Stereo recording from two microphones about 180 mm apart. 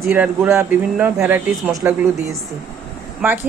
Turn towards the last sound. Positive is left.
turn(degrees=-10)  # may be behind; listen again after turning